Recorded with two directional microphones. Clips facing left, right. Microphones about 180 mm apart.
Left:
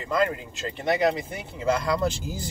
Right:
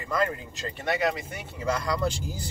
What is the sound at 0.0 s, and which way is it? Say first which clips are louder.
Speech: left 3 dB; 25° left (ahead or behind).